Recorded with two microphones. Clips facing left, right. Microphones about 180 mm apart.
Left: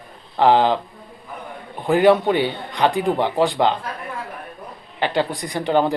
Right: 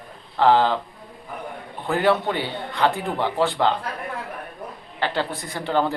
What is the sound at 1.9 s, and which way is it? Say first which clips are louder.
Speech: left 6 dB; 15° left (ahead or behind).